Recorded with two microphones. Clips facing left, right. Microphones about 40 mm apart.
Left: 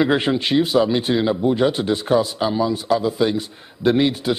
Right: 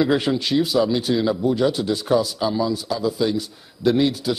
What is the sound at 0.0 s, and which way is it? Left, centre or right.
Speech, left.